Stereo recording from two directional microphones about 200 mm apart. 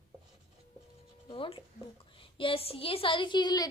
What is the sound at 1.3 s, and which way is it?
A woman's voice, 25° left (ahead or behind).